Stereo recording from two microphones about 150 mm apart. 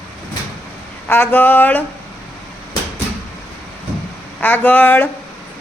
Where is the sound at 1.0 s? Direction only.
15° left (ahead or behind).